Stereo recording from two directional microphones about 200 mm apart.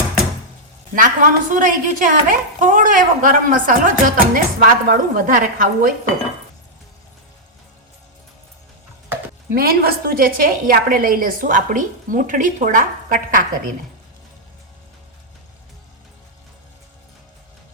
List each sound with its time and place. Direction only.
0.9 s a woman's voice: 40° right (ahead or behind)
9.5 s a woman's voice: 50° right (ahead or behind)